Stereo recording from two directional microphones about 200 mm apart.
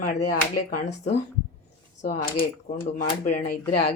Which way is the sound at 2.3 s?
35° left (ahead or behind).